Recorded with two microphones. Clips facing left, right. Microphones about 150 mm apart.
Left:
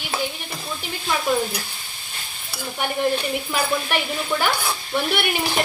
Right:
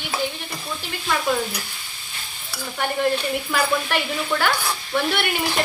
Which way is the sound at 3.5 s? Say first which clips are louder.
Right 1 dB; 15° left (ahead or behind).